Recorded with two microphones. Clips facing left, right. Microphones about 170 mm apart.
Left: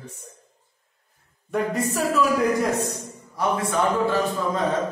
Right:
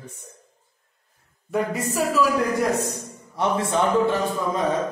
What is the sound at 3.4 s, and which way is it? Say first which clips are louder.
A man's voice: right 1 dB; 25° right (ahead or behind).